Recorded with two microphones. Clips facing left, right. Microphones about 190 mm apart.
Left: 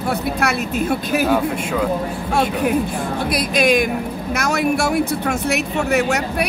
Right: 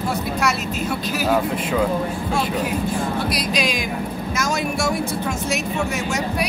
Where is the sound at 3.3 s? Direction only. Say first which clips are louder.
Left 6 dB; 55° left (ahead or behind).